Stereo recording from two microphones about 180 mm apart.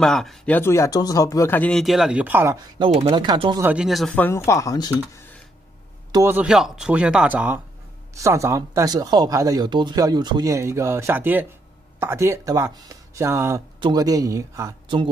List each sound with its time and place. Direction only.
0.0 s speech: centre (ahead or behind); by 2.6 s 15° right (ahead or behind)
2.8 s speech: 35° right (ahead or behind)
3.6 s speech: 5° right (ahead or behind)
4.1 s speech: 10° left (ahead or behind)
6.1 s speech: 10° right (ahead or behind)